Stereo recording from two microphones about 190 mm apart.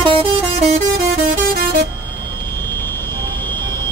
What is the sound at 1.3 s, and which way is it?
Vehicle, 55° right (ahead or behind).